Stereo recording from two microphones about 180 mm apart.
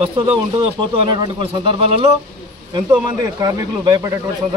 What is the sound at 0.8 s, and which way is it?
Speech, 25° right (ahead or behind).